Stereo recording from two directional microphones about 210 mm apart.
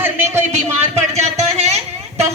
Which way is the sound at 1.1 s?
30° right (ahead or behind).